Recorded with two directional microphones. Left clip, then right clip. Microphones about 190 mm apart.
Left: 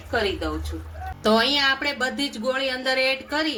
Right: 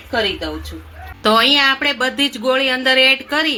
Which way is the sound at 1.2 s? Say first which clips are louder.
Right 7 dB; 40° right (ahead or behind).